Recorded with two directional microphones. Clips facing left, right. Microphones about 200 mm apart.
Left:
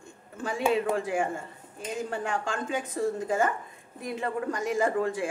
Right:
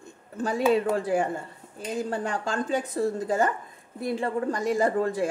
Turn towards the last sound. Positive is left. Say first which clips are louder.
# right 3 dB
turn(degrees=-35)  # may be behind; listen again after turning